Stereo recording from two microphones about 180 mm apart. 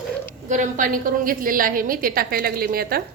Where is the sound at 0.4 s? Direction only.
45° right (ahead or behind).